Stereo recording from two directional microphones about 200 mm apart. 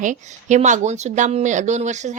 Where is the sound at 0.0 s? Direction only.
40° right (ahead or behind).